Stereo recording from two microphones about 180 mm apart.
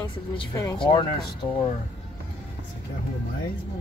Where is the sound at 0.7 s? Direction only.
25° left (ahead or behind).